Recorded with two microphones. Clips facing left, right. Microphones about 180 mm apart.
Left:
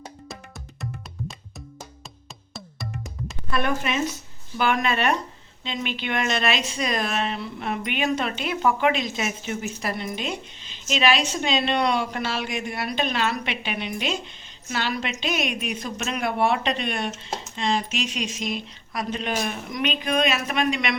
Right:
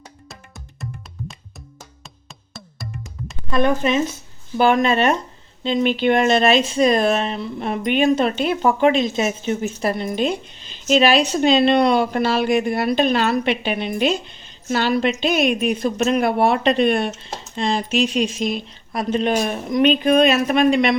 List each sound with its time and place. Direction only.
2.5 s music: centre (ahead or behind)
3.5 s speech: 25° right (ahead or behind)